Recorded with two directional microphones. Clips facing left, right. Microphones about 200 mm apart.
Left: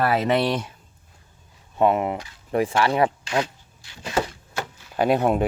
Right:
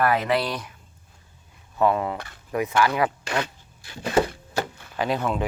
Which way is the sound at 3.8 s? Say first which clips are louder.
Right 6 dB; 55° right (ahead or behind).